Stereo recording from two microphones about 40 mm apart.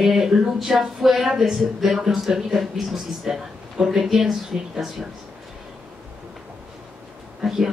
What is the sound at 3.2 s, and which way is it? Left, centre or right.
Speech, centre.